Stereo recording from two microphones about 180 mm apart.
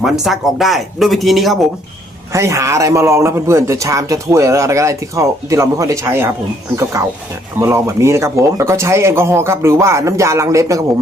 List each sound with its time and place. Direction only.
0.0 s speech: centre (ahead or behind)
2.3 s a man's voice: 15° right (ahead or behind)